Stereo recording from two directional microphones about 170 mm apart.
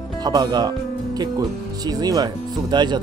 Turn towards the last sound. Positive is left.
turn(degrees=-25)  # may be behind; listen again after turning